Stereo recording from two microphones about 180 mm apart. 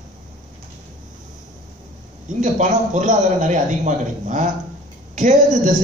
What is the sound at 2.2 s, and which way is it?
A man's voice, 45° right (ahead or behind).